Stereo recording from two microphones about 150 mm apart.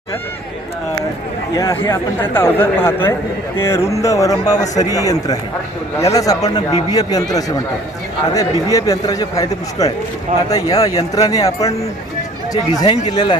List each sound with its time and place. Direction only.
1.5 s a man's voice: 20° left (ahead or behind)
8.3 s a man's voice: 20° left (ahead or behind)
12.7 s a man's voice: 30° left (ahead or behind)